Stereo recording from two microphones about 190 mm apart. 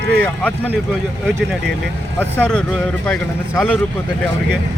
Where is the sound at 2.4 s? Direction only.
5° left (ahead or behind).